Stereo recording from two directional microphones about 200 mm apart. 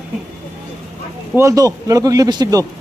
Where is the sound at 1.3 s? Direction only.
15° right (ahead or behind).